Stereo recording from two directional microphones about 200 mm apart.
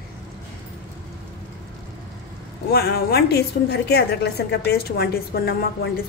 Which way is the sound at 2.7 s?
50° left (ahead or behind).